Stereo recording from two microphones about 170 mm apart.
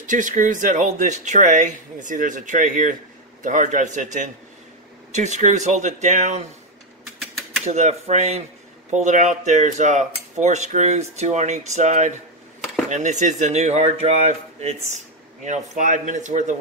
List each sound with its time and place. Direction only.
0.0 s speech: 50° right (ahead or behind)
7.6 s speech: 40° right (ahead or behind)